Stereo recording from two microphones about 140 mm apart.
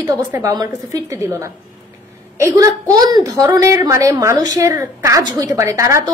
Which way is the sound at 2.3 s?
20° right (ahead or behind).